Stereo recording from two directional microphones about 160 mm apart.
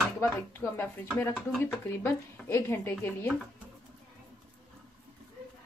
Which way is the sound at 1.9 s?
15° left (ahead or behind).